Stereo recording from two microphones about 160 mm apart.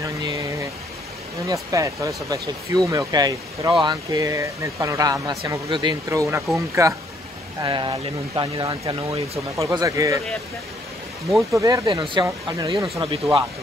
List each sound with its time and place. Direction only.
0.0 s a sound: 20° right (ahead or behind)
1.5 s speech: 20° right (ahead or behind)
7.6 s speech: 30° right (ahead or behind)
9.6 s speech: 20° right (ahead or behind)
11.5 s speech: 25° right (ahead or behind)
11.9 s speech: 35° right (ahead or behind)
12.7 s speech: centre (ahead or behind)
13.0 s speech: 35° right (ahead or behind)